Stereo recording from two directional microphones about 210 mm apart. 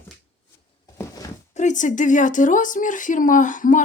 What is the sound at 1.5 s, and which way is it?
A woman's voice, 35° left (ahead or behind).